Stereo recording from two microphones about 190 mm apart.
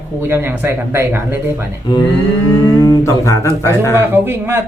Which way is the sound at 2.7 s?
20° left (ahead or behind).